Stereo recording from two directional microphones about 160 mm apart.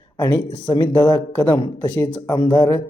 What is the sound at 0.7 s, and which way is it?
Speech, 20° left (ahead or behind).